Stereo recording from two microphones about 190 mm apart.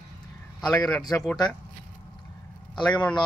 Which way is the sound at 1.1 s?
10° left (ahead or behind).